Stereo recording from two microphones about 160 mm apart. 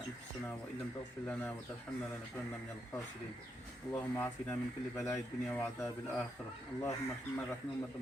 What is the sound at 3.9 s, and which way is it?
Speech, 15° left (ahead or behind).